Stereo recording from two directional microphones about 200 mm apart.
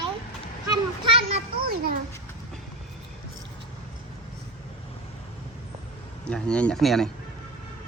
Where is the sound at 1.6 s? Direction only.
50° right (ahead or behind).